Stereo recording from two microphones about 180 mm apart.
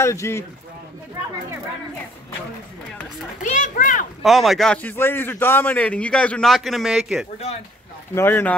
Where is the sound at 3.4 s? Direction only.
45° left (ahead or behind).